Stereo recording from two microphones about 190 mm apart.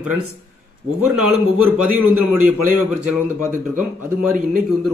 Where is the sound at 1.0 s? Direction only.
5° right (ahead or behind).